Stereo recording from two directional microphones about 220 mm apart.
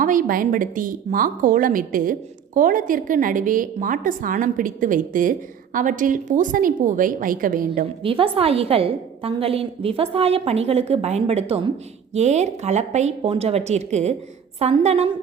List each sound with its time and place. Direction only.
0.0 s a woman's voice: 40° right (ahead or behind)
8.0 s a woman's voice: 25° right (ahead or behind)